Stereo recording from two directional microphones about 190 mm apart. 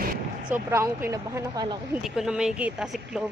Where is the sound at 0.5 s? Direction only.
15° right (ahead or behind).